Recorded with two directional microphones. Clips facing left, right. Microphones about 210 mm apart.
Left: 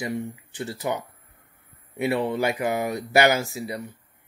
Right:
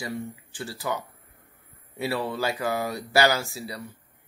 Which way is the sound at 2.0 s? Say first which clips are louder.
Left 4 dB; 20° left (ahead or behind).